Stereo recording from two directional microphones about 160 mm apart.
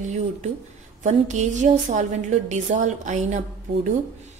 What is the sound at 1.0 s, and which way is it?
A woman's voice, 50° right (ahead or behind).